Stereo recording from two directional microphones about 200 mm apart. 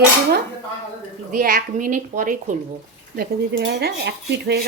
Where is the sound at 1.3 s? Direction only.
45° right (ahead or behind).